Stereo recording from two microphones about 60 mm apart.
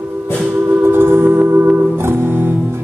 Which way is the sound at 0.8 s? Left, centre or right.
Right.